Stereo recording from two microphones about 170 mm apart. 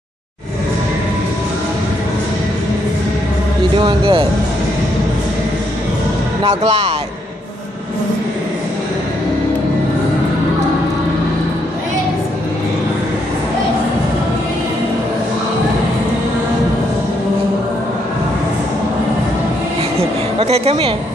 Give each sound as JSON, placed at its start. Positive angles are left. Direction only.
{"t": 3.7, "sound": "speech", "side_deg": -30}
{"t": 6.4, "sound": "speech", "side_deg": -35}
{"t": 20.0, "sound": "a woman's voice", "side_deg": -35}